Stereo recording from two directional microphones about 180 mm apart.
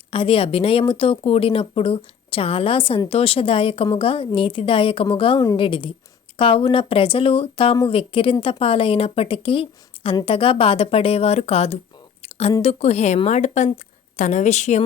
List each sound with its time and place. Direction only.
0.1 s a woman's voice: 30° left (ahead or behind)
12.2 s a sound: 35° left (ahead or behind)
12.6 s speech: 35° left (ahead or behind)